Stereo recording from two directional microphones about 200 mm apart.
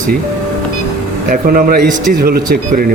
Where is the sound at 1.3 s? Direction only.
45° right (ahead or behind).